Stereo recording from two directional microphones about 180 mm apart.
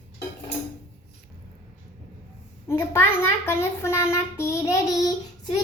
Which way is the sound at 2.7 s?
15° left (ahead or behind).